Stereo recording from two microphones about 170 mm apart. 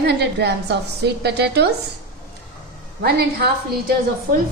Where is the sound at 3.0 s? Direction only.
70° right (ahead or behind).